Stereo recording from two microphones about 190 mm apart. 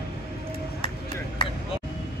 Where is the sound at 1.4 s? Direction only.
25° left (ahead or behind).